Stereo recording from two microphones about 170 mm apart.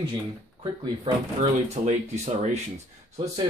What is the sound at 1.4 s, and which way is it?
Speech, 40° right (ahead or behind).